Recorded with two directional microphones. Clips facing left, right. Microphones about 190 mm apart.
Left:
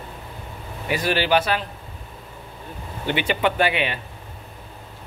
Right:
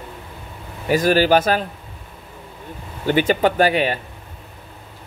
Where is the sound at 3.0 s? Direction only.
40° right (ahead or behind).